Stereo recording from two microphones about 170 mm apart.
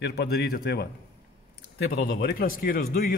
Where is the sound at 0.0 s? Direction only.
75° left (ahead or behind).